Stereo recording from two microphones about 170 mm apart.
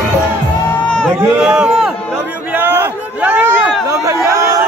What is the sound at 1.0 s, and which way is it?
Speech, 5° right (ahead or behind).